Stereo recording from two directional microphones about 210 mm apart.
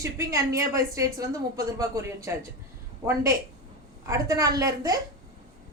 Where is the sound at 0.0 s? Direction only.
15° right (ahead or behind).